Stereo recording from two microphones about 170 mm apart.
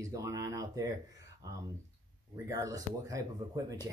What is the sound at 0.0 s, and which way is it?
Speech, 20° right (ahead or behind).